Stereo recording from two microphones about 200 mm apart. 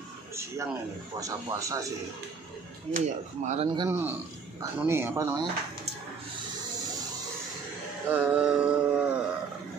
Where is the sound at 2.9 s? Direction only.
35° right (ahead or behind).